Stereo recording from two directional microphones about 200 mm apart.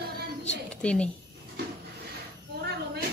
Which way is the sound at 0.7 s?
5° left (ahead or behind).